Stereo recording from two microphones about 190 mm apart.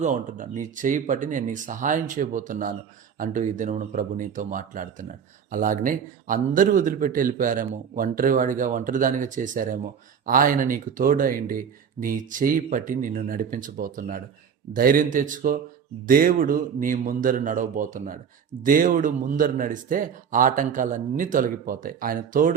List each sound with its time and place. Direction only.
0.0 s speech: 40° right (ahead or behind)